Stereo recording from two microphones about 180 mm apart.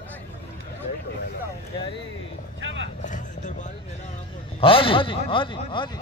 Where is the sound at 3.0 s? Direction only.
45° left (ahead or behind).